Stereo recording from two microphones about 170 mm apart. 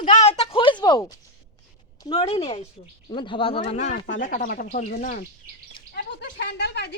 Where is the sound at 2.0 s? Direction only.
35° left (ahead or behind).